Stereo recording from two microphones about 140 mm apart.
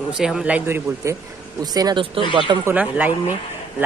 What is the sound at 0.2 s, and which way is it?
Speech, 5° right (ahead or behind).